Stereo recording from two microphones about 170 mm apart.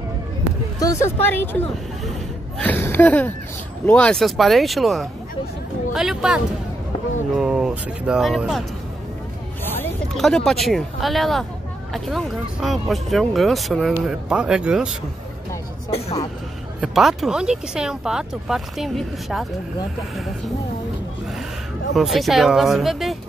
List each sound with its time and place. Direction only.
0.7 s a woman's voice: 20° left (ahead or behind)
2.6 s a woman's voice: 10° left (ahead or behind)
10.1 s speech: centre (ahead or behind)
16.8 s speech: 5° right (ahead or behind)
21.9 s speech: centre (ahead or behind)